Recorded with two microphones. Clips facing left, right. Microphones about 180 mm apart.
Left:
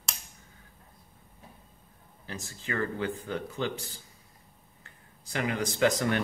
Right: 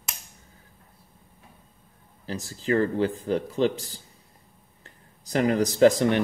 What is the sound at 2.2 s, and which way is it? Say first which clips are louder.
Speech: right 11 dB; 35° right (ahead or behind).